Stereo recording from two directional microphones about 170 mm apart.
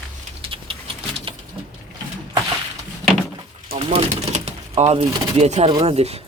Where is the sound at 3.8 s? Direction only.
35° right (ahead or behind).